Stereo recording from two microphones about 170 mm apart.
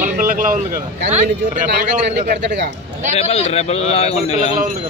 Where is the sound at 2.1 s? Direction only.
70° right (ahead or behind).